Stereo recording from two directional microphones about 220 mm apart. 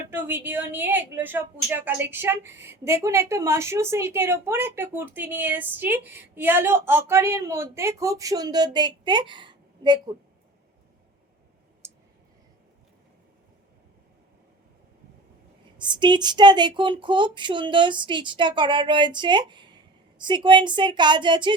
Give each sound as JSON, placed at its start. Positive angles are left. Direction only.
{"t": 0.1, "sound": "a woman's voice", "side_deg": -10}
{"t": 11.8, "sound": "clicking", "side_deg": -10}
{"t": 15.8, "sound": "speech", "side_deg": -20}